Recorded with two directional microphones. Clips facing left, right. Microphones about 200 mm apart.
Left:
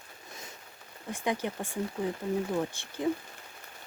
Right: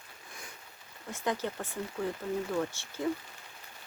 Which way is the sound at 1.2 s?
15° left (ahead or behind).